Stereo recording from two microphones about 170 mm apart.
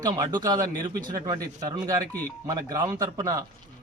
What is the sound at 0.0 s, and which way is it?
Speech, 25° right (ahead or behind).